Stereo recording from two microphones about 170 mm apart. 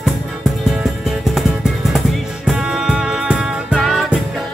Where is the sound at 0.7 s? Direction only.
Centre (ahead or behind).